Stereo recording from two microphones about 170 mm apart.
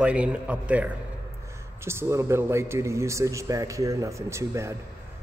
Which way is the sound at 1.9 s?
15° right (ahead or behind).